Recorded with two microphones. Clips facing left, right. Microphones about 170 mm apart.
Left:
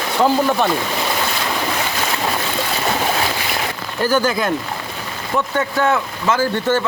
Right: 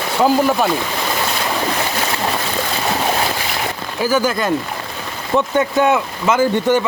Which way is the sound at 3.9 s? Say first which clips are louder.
Even; 5° right (ahead or behind).